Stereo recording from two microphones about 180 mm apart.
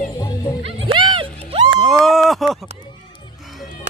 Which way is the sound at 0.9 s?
25° right (ahead or behind).